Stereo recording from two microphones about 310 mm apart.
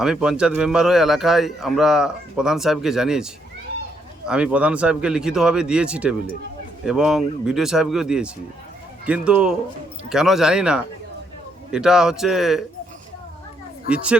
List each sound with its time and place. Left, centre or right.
0.0 s speech: centre
4.3 s speech: centre
13.9 s speech: centre